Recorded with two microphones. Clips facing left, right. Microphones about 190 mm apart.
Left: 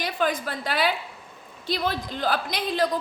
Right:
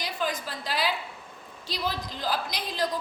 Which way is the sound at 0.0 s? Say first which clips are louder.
Left 5 dB; 55° left (ahead or behind).